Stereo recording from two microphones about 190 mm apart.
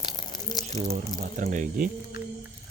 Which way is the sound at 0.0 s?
20° left (ahead or behind).